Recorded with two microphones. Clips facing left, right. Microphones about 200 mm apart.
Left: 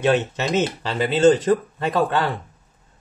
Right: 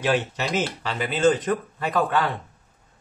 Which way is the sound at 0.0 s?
25° left (ahead or behind).